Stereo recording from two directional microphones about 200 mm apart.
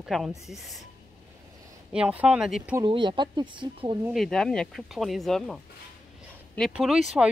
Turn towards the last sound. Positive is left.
turn(degrees=-5)  # may be behind; listen again after turning